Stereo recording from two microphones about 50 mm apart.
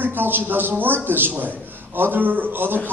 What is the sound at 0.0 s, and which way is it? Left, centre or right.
A man's voice, right.